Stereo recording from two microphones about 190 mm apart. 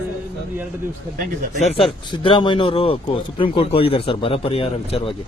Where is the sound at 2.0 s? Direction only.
25° left (ahead or behind).